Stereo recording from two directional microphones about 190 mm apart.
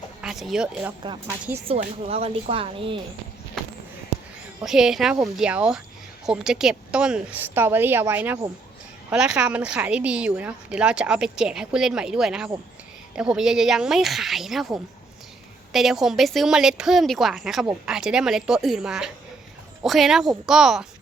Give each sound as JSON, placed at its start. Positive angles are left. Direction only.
{"t": 0.2, "sound": "speech", "side_deg": 0}
{"t": 1.6, "sound": "speech", "side_deg": -35}
{"t": 4.6, "sound": "a woman's voice", "side_deg": 0}